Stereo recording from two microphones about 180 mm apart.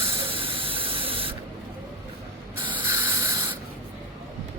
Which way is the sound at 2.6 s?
25° right (ahead or behind).